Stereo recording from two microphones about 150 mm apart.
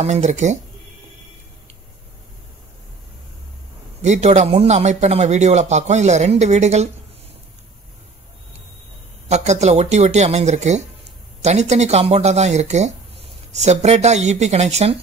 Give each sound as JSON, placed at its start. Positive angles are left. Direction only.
{"t": 0.0, "sound": "speech", "side_deg": -50}
{"t": 4.0, "sound": "speech", "side_deg": -50}
{"t": 9.3, "sound": "speech", "side_deg": -50}